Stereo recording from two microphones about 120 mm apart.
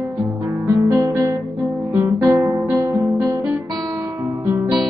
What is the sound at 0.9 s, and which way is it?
Guitar, 25° right (ahead or behind).